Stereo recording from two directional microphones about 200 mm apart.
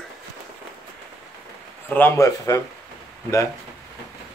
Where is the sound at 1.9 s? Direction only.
10° left (ahead or behind).